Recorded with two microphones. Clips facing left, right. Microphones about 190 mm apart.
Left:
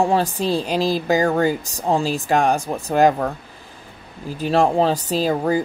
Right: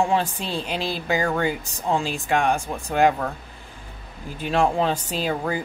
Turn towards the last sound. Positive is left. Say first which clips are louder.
# left 6 dB
turn(degrees=35)  # may be behind; listen again after turning